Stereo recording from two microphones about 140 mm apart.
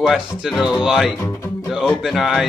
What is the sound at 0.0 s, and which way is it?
Speech, 5° right (ahead or behind).